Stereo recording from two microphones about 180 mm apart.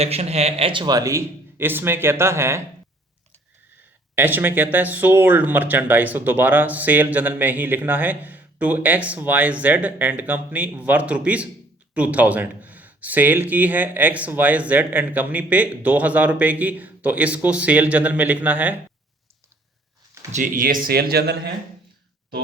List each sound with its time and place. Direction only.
0.0 s speech: 35° right (ahead or behind); by 2.6 s 15° right (ahead or behind)
4.1 s speech: 10° right (ahead or behind)
20.3 s speech: 45° right (ahead or behind)